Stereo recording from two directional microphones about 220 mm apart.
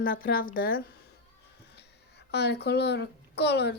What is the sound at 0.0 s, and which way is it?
Speech, 40° left (ahead or behind).